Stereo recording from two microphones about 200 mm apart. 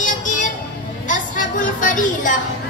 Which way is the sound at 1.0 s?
40° left (ahead or behind).